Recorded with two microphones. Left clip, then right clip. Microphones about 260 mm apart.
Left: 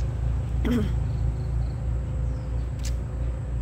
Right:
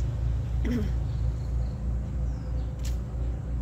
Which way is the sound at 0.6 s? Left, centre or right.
Centre.